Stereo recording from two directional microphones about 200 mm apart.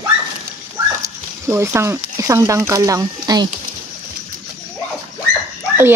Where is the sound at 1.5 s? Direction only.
15° right (ahead or behind).